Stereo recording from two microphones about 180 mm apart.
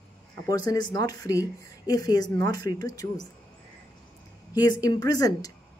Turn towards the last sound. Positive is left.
turn(degrees=20)  # may be behind; listen again after turning